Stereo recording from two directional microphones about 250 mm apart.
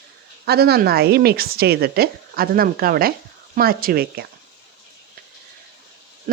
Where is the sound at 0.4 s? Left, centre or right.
Right.